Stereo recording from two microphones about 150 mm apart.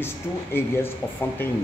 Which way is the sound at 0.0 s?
15° left (ahead or behind).